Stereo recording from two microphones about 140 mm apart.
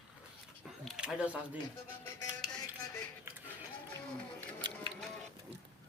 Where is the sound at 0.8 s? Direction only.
5° right (ahead or behind).